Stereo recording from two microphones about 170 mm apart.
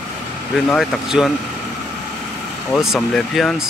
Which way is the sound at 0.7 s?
Centre (ahead or behind).